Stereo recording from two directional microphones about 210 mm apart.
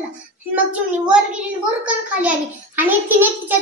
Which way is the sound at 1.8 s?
5° right (ahead or behind).